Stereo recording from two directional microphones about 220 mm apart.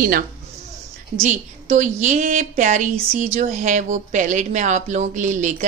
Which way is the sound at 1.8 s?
35° right (ahead or behind).